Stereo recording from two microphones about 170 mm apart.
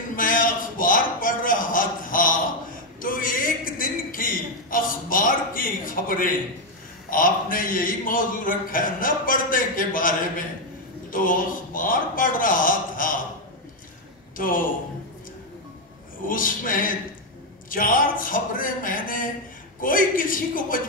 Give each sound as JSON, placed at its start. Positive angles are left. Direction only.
{"t": 0.1, "sound": "a sound", "side_deg": 55}
{"t": 7.1, "sound": "a man's voice", "side_deg": 55}
{"t": 14.3, "sound": "a man's voice", "side_deg": 55}
{"t": 16.3, "sound": "a man's voice", "side_deg": 55}